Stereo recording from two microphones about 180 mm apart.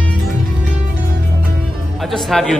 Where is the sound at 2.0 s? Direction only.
Centre (ahead or behind).